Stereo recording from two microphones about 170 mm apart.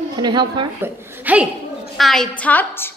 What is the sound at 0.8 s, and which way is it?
Speech, 15° right (ahead or behind).